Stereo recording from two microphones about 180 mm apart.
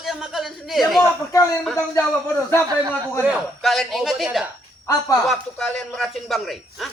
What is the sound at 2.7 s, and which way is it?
Speech, 20° right (ahead or behind).